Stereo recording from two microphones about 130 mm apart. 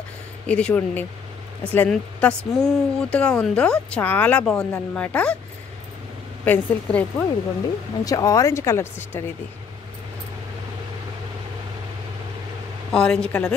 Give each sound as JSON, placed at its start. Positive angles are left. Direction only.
{"t": 0.5, "sound": "speech", "side_deg": 10}
{"t": 6.4, "sound": "speech", "side_deg": 10}
{"t": 8.0, "sound": "speech", "side_deg": 25}
{"t": 12.9, "sound": "a woman's voice", "side_deg": 5}